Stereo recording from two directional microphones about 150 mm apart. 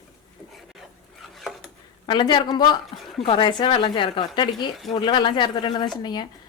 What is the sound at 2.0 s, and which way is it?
Speech, 30° left (ahead or behind).